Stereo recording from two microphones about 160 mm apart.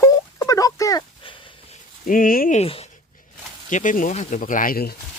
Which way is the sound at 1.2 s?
35° left (ahead or behind).